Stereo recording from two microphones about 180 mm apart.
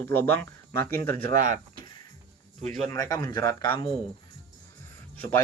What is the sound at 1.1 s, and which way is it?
Speech, 50° right (ahead or behind).